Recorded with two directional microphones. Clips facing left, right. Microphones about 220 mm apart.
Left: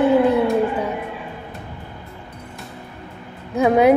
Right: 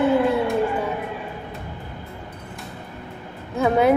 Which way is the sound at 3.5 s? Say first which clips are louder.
Left 4 dB; 15° left (ahead or behind).